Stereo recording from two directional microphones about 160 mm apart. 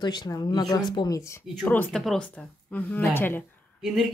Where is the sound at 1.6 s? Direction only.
5° left (ahead or behind).